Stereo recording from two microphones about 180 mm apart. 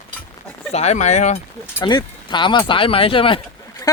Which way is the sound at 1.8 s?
25° left (ahead or behind).